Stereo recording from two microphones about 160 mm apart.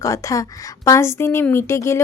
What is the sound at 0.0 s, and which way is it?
Speech, 20° left (ahead or behind).